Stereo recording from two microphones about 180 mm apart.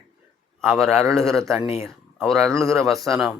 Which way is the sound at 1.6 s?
15° right (ahead or behind).